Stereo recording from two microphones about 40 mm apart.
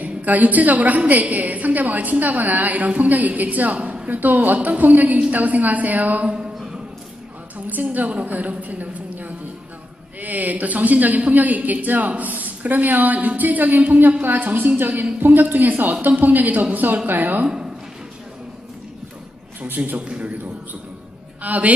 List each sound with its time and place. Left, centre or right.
0.0 s a woman's voice: right
4.1 s a woman's voice: right
6.2 s music: right
7.6 s a woman's voice: right
20.1 s a woman's voice: right
21.4 s a woman's voice: right